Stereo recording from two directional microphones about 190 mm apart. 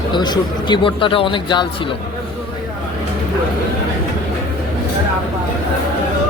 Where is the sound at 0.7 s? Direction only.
25° left (ahead or behind).